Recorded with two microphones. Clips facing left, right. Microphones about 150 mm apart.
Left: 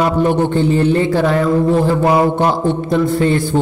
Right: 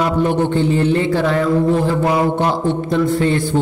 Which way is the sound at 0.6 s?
40° left (ahead or behind).